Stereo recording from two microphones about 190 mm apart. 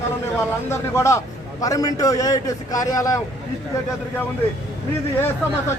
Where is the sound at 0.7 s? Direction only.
15° left (ahead or behind).